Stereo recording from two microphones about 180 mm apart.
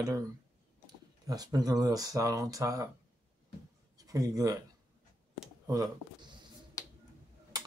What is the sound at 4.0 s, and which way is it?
Speech, 20° right (ahead or behind).